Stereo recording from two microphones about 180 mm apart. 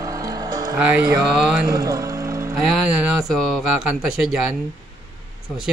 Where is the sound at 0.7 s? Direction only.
10° right (ahead or behind).